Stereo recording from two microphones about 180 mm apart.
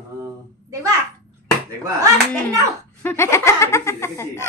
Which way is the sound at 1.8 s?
15° right (ahead or behind).